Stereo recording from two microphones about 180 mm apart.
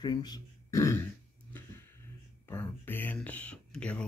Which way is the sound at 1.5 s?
10° left (ahead or behind).